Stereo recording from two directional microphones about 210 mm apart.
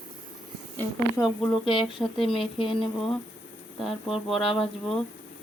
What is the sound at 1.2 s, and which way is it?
Speech, 15° left (ahead or behind).